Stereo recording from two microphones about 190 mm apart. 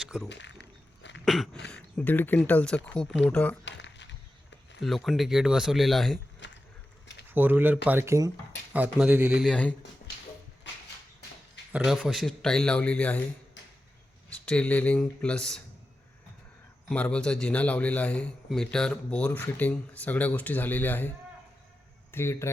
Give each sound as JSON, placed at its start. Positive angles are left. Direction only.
{"t": 0.0, "sound": "a sound", "side_deg": -5}
{"t": 0.3, "sound": "a sound", "side_deg": 70}
{"t": 1.2, "sound": "cough", "side_deg": 0}
{"t": 1.7, "sound": "a man's voice", "side_deg": 10}
{"t": 3.7, "sound": "a sound", "side_deg": 70}
{"t": 4.8, "sound": "speech", "side_deg": 0}
{"t": 6.4, "sound": "a sound", "side_deg": 70}
{"t": 7.3, "sound": "speech", "side_deg": -10}
{"t": 9.5, "sound": "a man's voice", "side_deg": 5}
{"t": 11.7, "sound": "speech", "side_deg": -5}
{"t": 14.3, "sound": "speech", "side_deg": 5}
{"t": 16.9, "sound": "a man's voice", "side_deg": 5}
{"t": 22.1, "sound": "a man's voice", "side_deg": 15}